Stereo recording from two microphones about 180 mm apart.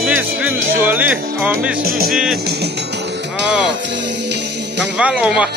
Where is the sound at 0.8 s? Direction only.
10° right (ahead or behind).